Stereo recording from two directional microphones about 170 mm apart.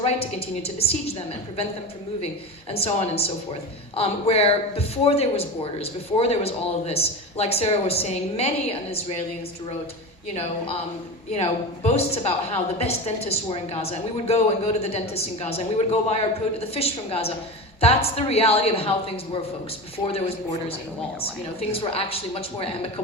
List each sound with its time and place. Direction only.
0.0 s a woman's voice: 35° left (ahead or behind)
2.7 s a woman's voice: 35° left (ahead or behind)
11.3 s a woman's voice: 40° left (ahead or behind)